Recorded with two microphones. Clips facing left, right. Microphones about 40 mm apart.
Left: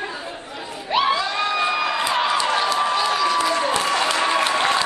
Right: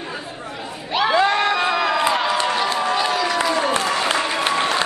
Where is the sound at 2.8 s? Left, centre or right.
Centre.